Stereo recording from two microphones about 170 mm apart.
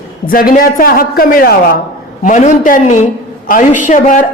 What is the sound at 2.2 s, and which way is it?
A woman's voice, 45° left (ahead or behind).